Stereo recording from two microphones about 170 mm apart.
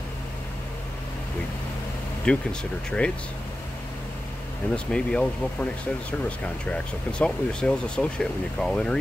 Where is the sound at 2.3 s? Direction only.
5° left (ahead or behind).